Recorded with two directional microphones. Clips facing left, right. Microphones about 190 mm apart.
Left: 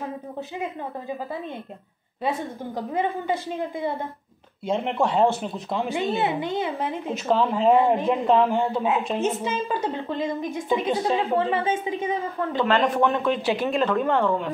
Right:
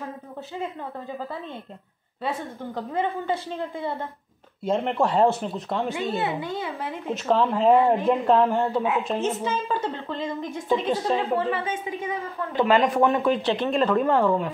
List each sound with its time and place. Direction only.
2.2 s a woman's voice: 15° left (ahead or behind)
4.6 s speech: centre (ahead or behind)
5.9 s a woman's voice: 20° left (ahead or behind)
7.2 s speech: centre (ahead or behind)
9.2 s a woman's voice: 15° left (ahead or behind)
10.7 s speech: centre (ahead or behind)
11.3 s a woman's voice: 25° left (ahead or behind)
12.5 s a man's voice: 10° right (ahead or behind)